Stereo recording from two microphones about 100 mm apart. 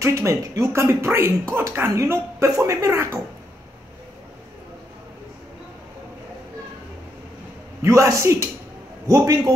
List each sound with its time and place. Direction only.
0.0 s speech: 30° right (ahead or behind)
7.8 s a man's voice: 30° right (ahead or behind)